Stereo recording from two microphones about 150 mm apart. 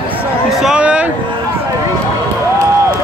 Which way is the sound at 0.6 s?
5° right (ahead or behind).